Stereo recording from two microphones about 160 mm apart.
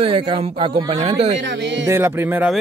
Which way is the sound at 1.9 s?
15° right (ahead or behind).